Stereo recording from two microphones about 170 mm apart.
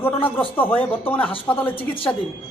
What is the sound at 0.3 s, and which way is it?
Speech, 10° left (ahead or behind).